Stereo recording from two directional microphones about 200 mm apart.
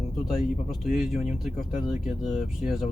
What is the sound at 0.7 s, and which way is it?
Speech, centre (ahead or behind).